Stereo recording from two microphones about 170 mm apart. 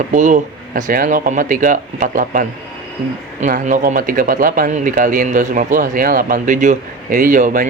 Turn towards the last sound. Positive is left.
turn(degrees=-50)  # may be behind; listen again after turning